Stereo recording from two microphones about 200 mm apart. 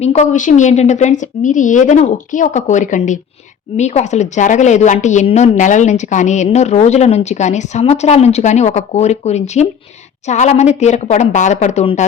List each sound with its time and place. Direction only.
0.0 s a woman's voice: 35° left (ahead or behind)